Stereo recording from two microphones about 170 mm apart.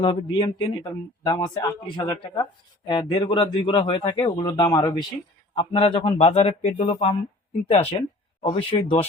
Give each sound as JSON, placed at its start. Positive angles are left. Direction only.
{"t": 0.0, "sound": "a man's voice", "side_deg": 30}